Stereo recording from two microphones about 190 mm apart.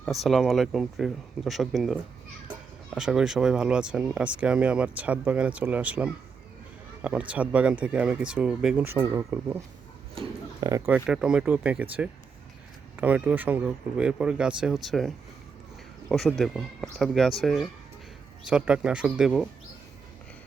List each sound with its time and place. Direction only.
0.0 s speech: centre (ahead or behind)